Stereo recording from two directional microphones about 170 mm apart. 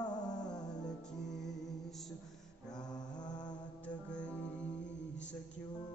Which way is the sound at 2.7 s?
25° left (ahead or behind).